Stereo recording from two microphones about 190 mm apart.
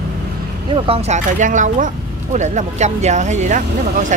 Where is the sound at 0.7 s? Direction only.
30° right (ahead or behind).